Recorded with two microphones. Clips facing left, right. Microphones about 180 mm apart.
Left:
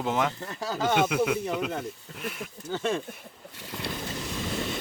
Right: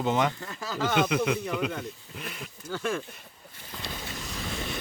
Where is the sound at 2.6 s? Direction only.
20° left (ahead or behind).